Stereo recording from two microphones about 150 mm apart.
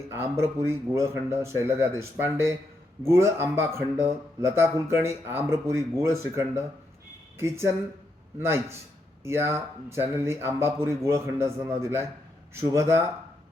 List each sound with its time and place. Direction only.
0.1 s speech: 15° right (ahead or behind)